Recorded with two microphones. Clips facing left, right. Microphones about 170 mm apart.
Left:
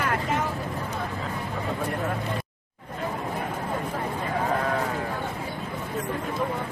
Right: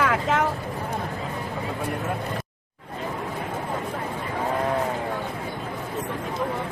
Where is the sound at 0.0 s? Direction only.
90° right.